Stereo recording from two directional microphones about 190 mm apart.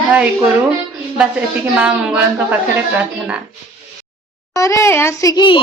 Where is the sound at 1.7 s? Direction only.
5° right (ahead or behind).